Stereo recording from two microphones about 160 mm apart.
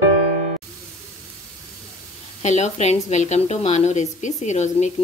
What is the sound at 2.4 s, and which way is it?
A woman's voice, 45° left (ahead or behind).